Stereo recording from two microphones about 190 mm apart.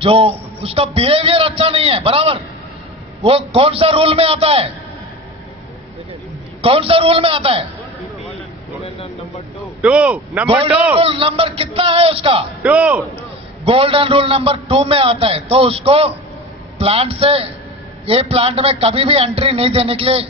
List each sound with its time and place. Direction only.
0.0 s a man's voice: 30° right (ahead or behind)
6.6 s a man's voice: 30° right (ahead or behind)
9.8 s a man's voice: 5° right (ahead or behind)
11.0 s a man's voice: 30° right (ahead or behind)
12.6 s a man's voice: 5° right (ahead or behind)
13.7 s a man's voice: 30° right (ahead or behind)